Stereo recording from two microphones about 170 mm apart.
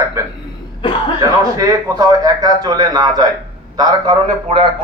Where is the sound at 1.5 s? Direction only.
20° right (ahead or behind).